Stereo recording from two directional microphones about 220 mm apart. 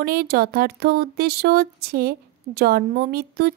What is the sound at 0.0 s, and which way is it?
Speech, 45° right (ahead or behind).